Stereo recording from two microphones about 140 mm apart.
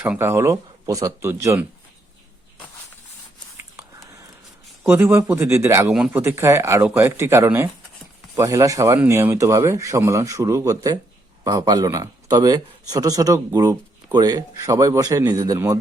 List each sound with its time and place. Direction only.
0.0 s speech: 15° right (ahead or behind)
4.9 s a man's voice: 20° right (ahead or behind)